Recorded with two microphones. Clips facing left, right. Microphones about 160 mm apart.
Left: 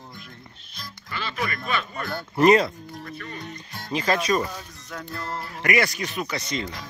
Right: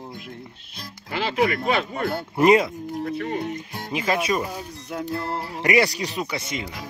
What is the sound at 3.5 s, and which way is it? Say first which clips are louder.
Speech: right 1 dB; 15° right (ahead or behind).